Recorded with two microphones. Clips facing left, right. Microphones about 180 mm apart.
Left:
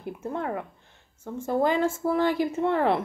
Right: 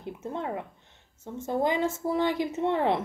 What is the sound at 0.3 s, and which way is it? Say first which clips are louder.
A woman's voice: left 2 dB; 20° right (ahead or behind).